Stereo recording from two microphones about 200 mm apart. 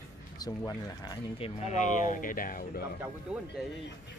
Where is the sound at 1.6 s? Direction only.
35° left (ahead or behind).